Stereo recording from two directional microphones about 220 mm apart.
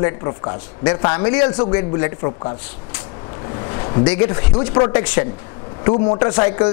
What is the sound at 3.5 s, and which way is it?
Speech, 20° left (ahead or behind).